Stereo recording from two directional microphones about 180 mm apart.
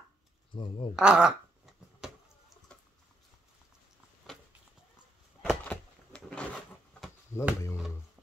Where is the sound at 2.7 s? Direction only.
5° left (ahead or behind).